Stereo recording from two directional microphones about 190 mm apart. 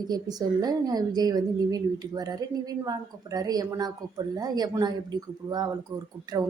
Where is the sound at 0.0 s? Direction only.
20° right (ahead or behind).